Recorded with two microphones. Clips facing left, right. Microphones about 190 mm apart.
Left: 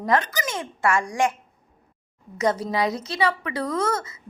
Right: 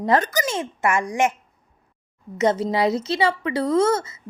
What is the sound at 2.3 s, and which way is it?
Speech, 25° right (ahead or behind).